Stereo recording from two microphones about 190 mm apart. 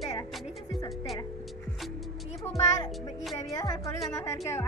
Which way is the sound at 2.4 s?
15° left (ahead or behind).